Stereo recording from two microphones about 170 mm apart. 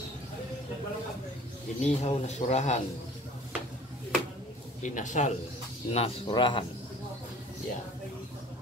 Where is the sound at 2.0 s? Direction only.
40° left (ahead or behind).